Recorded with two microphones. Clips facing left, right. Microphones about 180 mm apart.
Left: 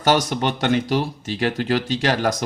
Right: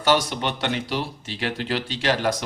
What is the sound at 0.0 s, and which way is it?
Speech, 45° left (ahead or behind).